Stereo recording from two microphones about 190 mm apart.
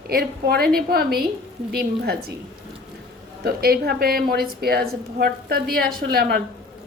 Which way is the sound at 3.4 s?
55° right (ahead or behind).